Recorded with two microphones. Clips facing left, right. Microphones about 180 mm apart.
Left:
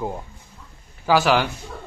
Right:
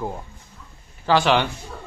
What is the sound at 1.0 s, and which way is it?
Speech, 5° left (ahead or behind).